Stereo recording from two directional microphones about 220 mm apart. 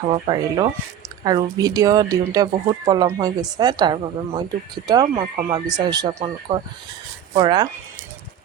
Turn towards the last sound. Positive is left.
turn(degrees=-20)  # may be behind; listen again after turning